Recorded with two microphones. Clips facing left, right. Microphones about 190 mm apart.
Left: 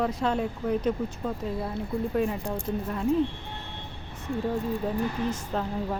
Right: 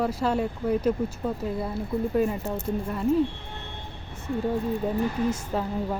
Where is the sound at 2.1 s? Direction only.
Centre (ahead or behind).